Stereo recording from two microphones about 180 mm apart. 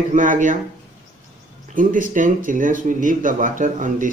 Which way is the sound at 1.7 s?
50° right (ahead or behind).